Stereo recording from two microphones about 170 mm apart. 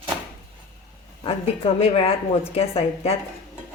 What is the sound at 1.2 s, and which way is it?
A woman's voice, 35° left (ahead or behind).